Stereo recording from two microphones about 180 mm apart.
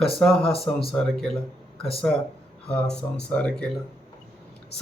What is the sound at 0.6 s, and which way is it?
Speech, 35° left (ahead or behind).